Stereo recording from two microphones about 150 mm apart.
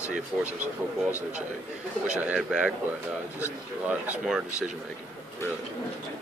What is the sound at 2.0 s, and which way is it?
Speech, 5° right (ahead or behind).